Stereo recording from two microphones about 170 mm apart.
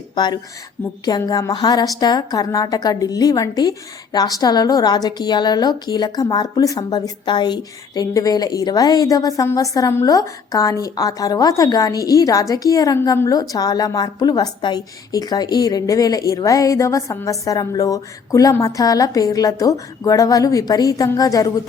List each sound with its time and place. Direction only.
1.0 s a woman's voice: 25° left (ahead or behind)